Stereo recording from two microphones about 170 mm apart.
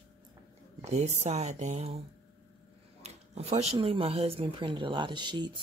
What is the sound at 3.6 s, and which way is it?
Speech, 35° right (ahead or behind).